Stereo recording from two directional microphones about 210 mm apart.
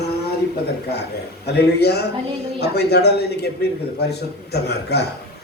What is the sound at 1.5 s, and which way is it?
Speech, 50° left (ahead or behind).